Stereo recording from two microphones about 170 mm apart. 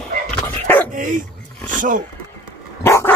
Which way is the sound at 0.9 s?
50° right (ahead or behind).